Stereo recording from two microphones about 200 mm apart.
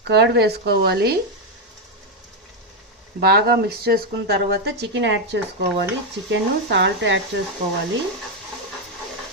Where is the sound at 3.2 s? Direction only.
50° right (ahead or behind).